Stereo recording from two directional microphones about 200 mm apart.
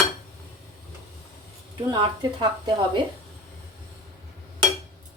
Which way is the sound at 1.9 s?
20° right (ahead or behind).